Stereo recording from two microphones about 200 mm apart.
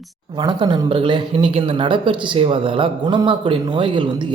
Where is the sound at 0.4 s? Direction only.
20° right (ahead or behind).